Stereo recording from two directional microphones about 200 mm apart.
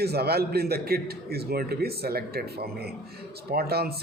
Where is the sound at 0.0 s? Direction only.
50° right (ahead or behind).